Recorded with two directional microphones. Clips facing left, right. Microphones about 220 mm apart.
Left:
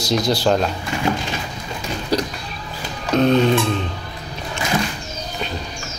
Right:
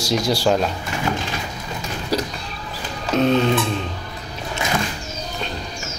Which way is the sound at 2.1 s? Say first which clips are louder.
Left 2 dB; 5° right (ahead or behind).